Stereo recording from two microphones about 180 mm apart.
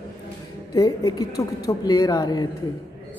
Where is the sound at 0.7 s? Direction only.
20° left (ahead or behind).